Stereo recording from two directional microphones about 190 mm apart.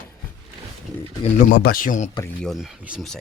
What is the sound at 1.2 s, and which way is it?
Speech, 45° left (ahead or behind).